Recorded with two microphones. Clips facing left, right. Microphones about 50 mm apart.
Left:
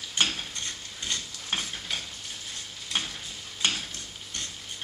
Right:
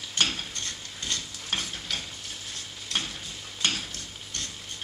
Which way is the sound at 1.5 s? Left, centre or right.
Centre.